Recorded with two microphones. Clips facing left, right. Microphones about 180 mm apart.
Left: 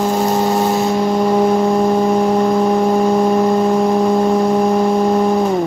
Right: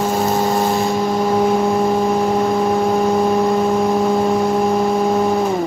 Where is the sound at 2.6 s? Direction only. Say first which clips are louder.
Left 2 dB; centre (ahead or behind).